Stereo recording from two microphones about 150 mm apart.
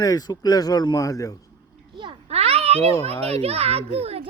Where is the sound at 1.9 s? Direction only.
35° right (ahead or behind).